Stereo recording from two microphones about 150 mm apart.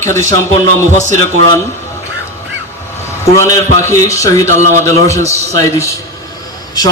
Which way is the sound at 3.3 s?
20° left (ahead or behind).